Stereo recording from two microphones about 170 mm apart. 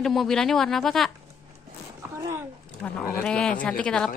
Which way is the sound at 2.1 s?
15° right (ahead or behind).